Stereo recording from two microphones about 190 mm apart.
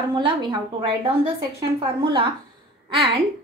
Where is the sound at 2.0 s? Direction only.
30° right (ahead or behind).